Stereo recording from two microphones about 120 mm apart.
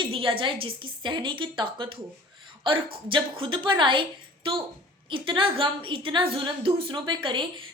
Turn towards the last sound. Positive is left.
turn(degrees=-45)  # may be behind; listen again after turning